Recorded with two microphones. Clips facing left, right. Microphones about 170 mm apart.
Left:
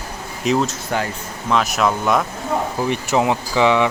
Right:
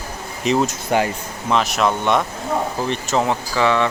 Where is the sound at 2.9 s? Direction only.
15° left (ahead or behind).